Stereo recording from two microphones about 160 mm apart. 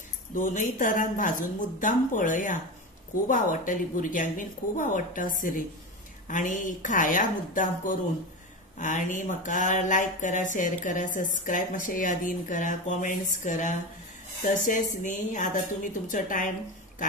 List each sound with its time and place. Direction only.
0.3 s a woman's voice: 55° left (ahead or behind)